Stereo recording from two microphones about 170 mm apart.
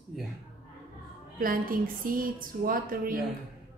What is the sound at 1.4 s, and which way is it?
A woman's voice, 55° right (ahead or behind).